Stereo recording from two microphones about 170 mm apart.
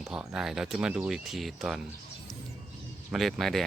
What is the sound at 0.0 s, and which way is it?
Speech, 5° right (ahead or behind).